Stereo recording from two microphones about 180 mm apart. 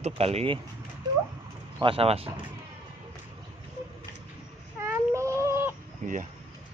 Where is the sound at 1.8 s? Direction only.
30° right (ahead or behind).